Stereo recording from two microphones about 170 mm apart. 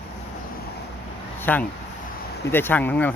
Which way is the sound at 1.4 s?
10° left (ahead or behind).